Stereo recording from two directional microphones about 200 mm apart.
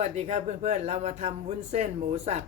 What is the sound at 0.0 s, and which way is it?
Speech, 35° right (ahead or behind).